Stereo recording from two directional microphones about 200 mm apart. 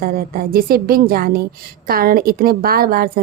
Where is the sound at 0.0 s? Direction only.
45° right (ahead or behind).